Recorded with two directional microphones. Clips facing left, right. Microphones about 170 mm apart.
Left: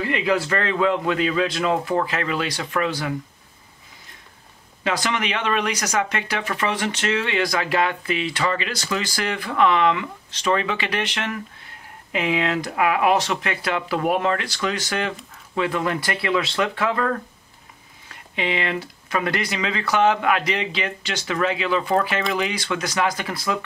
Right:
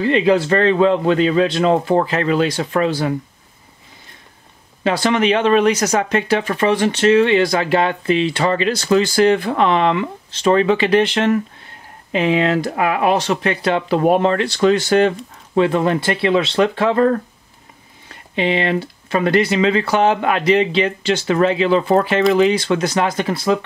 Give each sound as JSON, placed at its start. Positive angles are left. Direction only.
{"t": 0.0, "sound": "speech", "side_deg": -30}
{"t": 4.8, "sound": "speech", "side_deg": -30}